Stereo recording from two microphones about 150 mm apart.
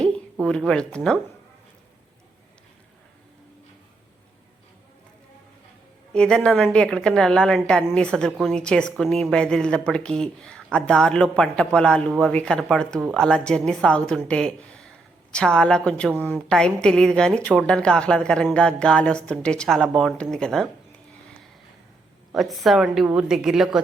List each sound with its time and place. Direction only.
0.4 s a woman's voice: 5° left (ahead or behind)
6.1 s a woman's voice: 5° left (ahead or behind)
22.3 s a woman's voice: centre (ahead or behind)